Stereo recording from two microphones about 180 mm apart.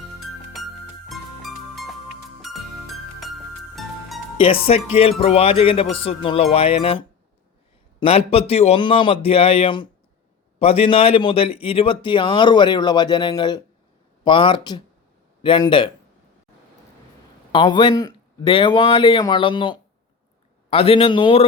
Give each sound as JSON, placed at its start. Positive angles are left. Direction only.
{"t": 0.5, "sound": "music", "side_deg": 0}
{"t": 4.4, "sound": "speech", "side_deg": 30}
{"t": 17.5, "sound": "speech", "side_deg": 25}